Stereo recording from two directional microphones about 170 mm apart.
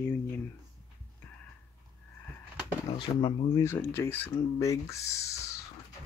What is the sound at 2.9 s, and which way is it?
Speech, 30° left (ahead or behind).